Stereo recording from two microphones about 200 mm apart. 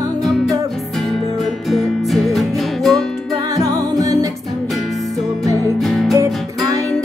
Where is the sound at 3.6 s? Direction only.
15° right (ahead or behind).